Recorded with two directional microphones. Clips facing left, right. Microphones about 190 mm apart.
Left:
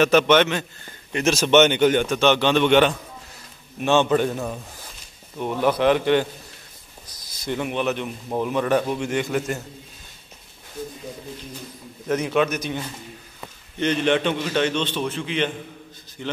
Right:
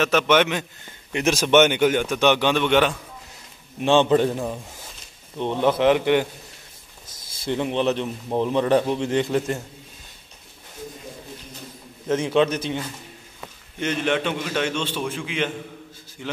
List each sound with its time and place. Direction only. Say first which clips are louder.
0.0 s a man's voice: left 2 dB; centre (ahead or behind)
3.8 s a man's voice: right 2 dB; 25° right (ahead or behind)
4.3 s a man's voice: right 1 dB; 15° right (ahead or behind)
7.2 s a man's voice: right 2 dB; 30° right (ahead or behind)
12.4 s a man's voice: right 3 dB; 30° right (ahead or behind)
13.7 s a man's voice: left 3 dB; 5° right (ahead or behind)